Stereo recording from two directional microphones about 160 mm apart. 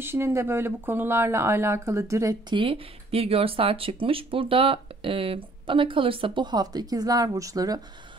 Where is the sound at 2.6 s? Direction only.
35° right (ahead or behind).